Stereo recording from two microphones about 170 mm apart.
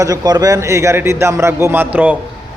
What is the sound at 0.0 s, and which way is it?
A man's voice, 20° right (ahead or behind).